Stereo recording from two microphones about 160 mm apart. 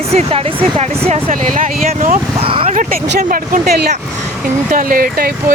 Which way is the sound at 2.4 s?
35° right (ahead or behind).